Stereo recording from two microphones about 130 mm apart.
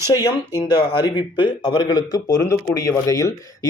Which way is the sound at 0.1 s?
35° left (ahead or behind).